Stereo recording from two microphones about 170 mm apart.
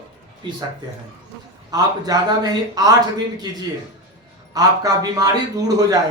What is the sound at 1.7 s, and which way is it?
A man's voice, 20° right (ahead or behind).